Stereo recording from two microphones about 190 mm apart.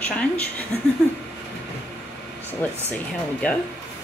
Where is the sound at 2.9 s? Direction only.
5° left (ahead or behind).